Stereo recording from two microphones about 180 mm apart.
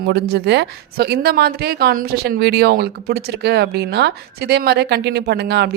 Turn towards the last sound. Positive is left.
turn(degrees=-65)  # may be behind; listen again after turning